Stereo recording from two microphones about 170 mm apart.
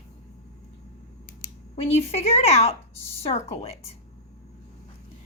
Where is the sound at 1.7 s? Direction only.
35° left (ahead or behind).